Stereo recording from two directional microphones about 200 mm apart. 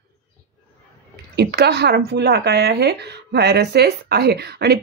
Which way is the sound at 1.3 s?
55° right (ahead or behind).